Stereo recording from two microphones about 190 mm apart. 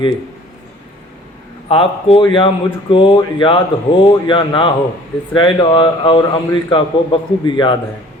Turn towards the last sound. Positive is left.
turn(degrees=25)  # may be behind; listen again after turning